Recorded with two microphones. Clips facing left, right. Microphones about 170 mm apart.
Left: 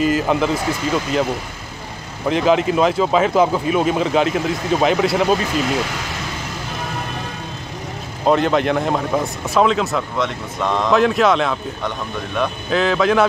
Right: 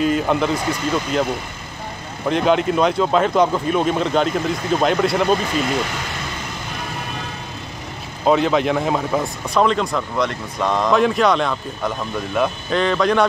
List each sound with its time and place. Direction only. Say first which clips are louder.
0.0 s speech: left 1 dB; centre (ahead or behind)
2.2 s speech: left 1 dB; centre (ahead or behind)
8.3 s speech: even; centre (ahead or behind)